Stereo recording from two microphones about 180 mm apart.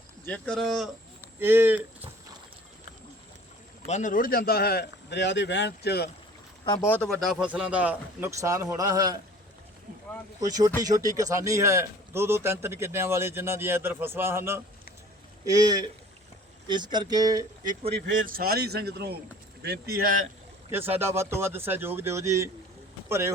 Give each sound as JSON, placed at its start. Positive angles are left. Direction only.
{"t": 0.3, "sound": "speech", "side_deg": 5}
{"t": 1.4, "sound": "speech", "side_deg": -10}
{"t": 3.8, "sound": "speech", "side_deg": 40}
{"t": 6.8, "sound": "a man's voice", "side_deg": 10}
{"t": 10.4, "sound": "a man's voice", "side_deg": -20}
{"t": 18.3, "sound": "speech", "side_deg": -55}
{"t": 20.7, "sound": "a man's voice", "side_deg": -10}